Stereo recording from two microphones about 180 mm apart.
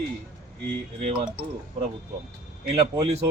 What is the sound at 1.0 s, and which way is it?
Speech, 30° right (ahead or behind).